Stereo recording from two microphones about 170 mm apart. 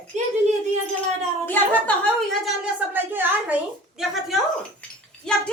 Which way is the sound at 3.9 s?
Centre (ahead or behind).